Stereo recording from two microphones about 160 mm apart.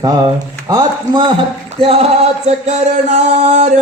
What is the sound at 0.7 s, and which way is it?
Mantra, 30° right (ahead or behind).